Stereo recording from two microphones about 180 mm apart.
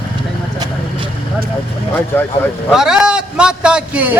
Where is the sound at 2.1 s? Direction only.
10° left (ahead or behind).